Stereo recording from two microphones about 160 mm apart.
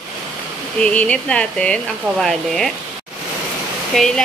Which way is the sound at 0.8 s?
5° left (ahead or behind).